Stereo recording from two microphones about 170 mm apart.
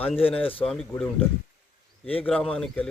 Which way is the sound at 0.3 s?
35° left (ahead or behind).